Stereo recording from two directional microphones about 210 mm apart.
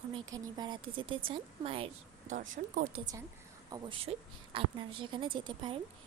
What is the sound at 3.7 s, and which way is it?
A woman's voice, 20° right (ahead or behind).